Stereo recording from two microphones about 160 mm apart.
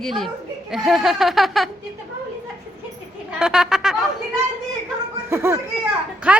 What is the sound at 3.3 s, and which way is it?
Speech, 5° right (ahead or behind).